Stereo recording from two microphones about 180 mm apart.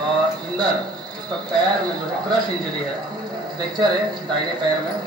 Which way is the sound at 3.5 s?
25° right (ahead or behind).